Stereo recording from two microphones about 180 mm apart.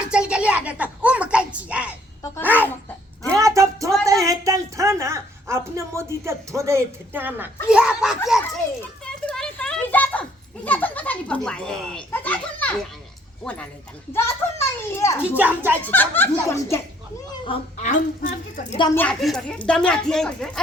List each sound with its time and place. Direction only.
0.1 s a woman's voice: 5° right (ahead or behind)
3.3 s a sound: 15° right (ahead or behind)
4.0 s a woman's voice: 20° right (ahead or behind)
9.0 s children playing: 5° left (ahead or behind)
13.4 s a child's voice: 5° left (ahead or behind)
15.4 s speech: 10° right (ahead or behind)
15.9 s speech: 10° left (ahead or behind)
17.4 s speech: 35° left (ahead or behind)
18.9 s speech: 5° left (ahead or behind)